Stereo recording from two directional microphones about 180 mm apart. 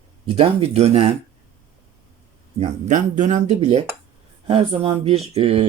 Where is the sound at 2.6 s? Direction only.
40° right (ahead or behind).